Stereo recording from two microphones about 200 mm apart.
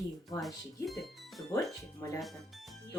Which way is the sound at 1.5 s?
15° left (ahead or behind).